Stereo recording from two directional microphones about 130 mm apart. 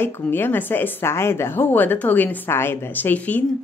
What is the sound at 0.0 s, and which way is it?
A woman's voice, 15° left (ahead or behind).